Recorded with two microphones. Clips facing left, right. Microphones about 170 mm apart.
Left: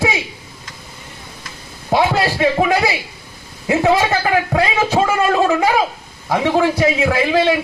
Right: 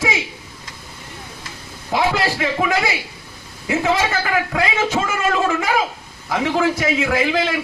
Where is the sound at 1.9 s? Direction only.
35° left (ahead or behind).